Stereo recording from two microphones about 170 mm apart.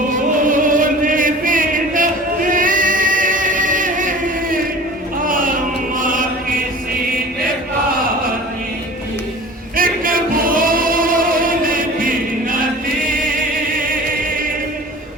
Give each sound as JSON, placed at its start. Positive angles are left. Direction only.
{"t": 0.5, "sound": "chant", "side_deg": -50}
{"t": 2.5, "sound": "music", "side_deg": -50}
{"t": 5.2, "sound": "a sound", "side_deg": -55}
{"t": 9.7, "sound": "singing", "side_deg": -55}